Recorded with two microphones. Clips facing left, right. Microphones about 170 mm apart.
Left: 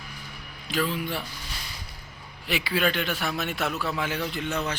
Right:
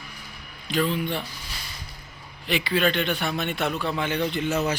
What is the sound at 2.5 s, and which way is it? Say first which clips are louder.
A man's voice: right 3 dB; 5° left (ahead or behind).